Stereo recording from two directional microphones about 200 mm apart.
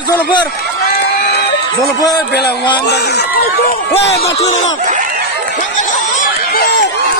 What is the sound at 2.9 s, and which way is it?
Speech, 55° left (ahead or behind).